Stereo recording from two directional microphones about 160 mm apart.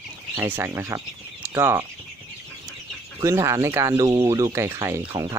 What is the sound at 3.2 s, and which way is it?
Speech, 20° right (ahead or behind).